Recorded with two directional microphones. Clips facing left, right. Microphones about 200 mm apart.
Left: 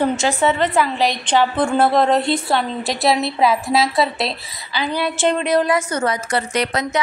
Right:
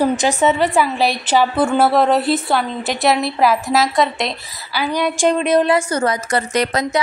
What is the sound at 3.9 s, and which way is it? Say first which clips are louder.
Speech: right 1 dB; centre (ahead or behind).